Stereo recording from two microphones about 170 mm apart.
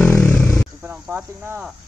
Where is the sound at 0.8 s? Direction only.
10° right (ahead or behind).